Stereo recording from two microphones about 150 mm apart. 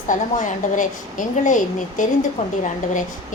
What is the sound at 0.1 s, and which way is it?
A woman's voice, 60° left (ahead or behind).